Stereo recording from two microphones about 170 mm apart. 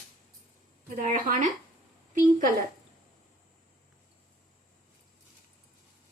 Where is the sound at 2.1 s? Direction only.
50° right (ahead or behind).